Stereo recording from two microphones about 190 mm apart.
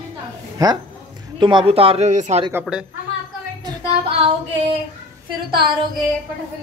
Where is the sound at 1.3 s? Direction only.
25° right (ahead or behind).